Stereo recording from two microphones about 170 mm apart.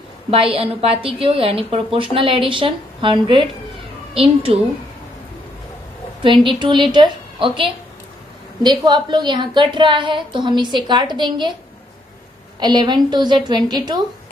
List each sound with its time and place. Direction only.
0.3 s a woman's voice: 35° right (ahead or behind)
6.2 s a woman's voice: 30° right (ahead or behind)
12.5 s a woman's voice: 25° right (ahead or behind)